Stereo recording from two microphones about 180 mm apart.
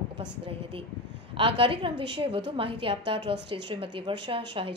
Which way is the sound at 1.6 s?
30° right (ahead or behind).